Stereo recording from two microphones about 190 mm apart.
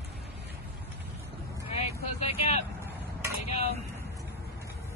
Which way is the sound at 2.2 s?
30° left (ahead or behind).